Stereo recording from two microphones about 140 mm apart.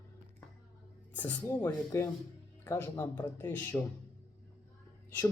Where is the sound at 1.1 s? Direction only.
10° left (ahead or behind).